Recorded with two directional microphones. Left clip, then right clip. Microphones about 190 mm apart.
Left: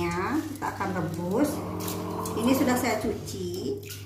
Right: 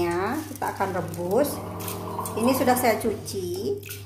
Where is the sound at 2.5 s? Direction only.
55° right (ahead or behind).